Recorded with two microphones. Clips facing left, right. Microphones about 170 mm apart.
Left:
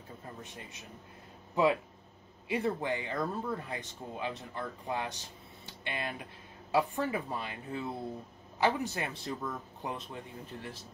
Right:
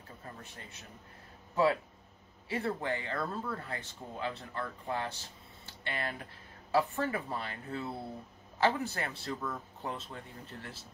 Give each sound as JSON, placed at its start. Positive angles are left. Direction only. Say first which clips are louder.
{"t": 1.5, "sound": "speech", "louder": "left 1 dB", "side_deg": 15}